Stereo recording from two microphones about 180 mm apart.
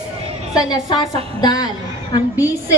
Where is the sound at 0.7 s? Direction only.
25° left (ahead or behind).